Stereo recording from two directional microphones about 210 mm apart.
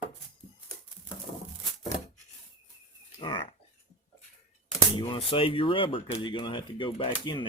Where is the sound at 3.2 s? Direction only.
20° left (ahead or behind).